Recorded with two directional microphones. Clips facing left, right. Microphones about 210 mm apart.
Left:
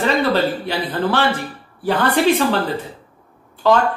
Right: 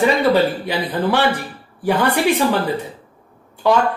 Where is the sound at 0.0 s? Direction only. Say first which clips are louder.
Right 2 dB; 15° right (ahead or behind).